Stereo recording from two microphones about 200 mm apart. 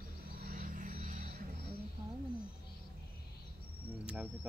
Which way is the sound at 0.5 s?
40° right (ahead or behind).